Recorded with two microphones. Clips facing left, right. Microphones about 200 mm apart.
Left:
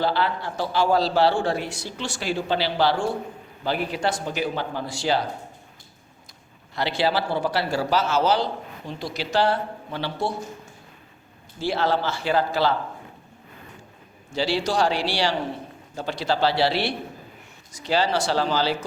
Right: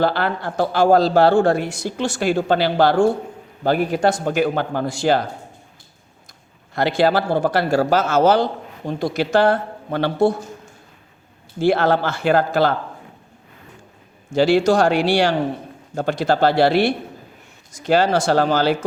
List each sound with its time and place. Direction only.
0.0 s a man's voice: 50° right (ahead or behind)
6.7 s a man's voice: 50° right (ahead or behind)
11.6 s a man's voice: 55° right (ahead or behind)
14.3 s a man's voice: 50° right (ahead or behind)